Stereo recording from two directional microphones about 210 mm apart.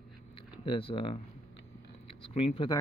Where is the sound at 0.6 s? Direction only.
25° left (ahead or behind).